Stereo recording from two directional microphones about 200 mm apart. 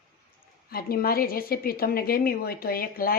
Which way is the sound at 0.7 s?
50° left (ahead or behind).